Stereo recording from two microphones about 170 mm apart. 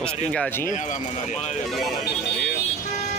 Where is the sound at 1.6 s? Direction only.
Centre (ahead or behind).